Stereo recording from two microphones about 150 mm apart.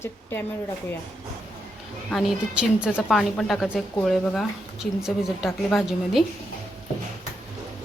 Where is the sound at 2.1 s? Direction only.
5° right (ahead or behind).